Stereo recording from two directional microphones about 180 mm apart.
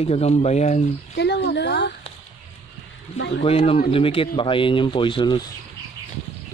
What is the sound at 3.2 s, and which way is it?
Speech, 75° left (ahead or behind).